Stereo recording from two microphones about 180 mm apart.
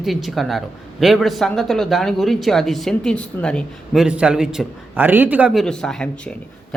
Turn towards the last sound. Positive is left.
turn(degrees=5)  # may be behind; listen again after turning